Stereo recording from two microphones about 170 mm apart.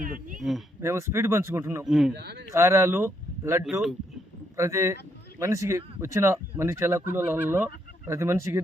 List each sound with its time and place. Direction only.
0.0 s speech: 50° right (ahead or behind)
0.8 s speech: 15° right (ahead or behind)
1.8 s speech: centre (ahead or behind)
2.1 s speech: 75° right (ahead or behind)
2.5 s speech: 15° right (ahead or behind)
3.6 s speech: centre (ahead or behind)
4.5 s speech: 15° right (ahead or behind)